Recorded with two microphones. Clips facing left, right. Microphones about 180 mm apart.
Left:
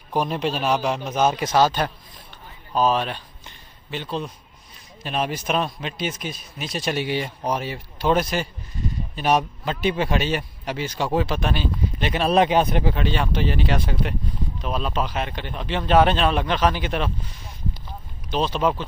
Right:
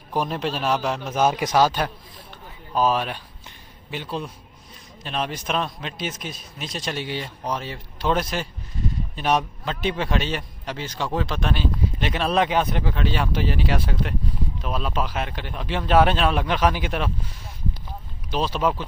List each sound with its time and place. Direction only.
0.1 s a man's voice: centre (ahead or behind)
5.0 s speech: 10° left (ahead or behind)
12.4 s speech: 25° left (ahead or behind)
12.9 s speech: 5° right (ahead or behind)
18.3 s speech: 5° right (ahead or behind)